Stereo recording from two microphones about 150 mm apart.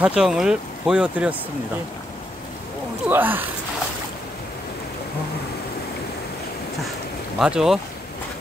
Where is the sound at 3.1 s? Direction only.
15° right (ahead or behind).